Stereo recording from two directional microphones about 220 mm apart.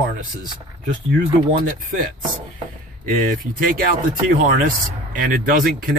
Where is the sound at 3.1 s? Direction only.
40° right (ahead or behind).